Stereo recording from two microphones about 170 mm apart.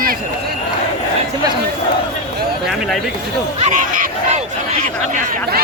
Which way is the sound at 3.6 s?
50° right (ahead or behind).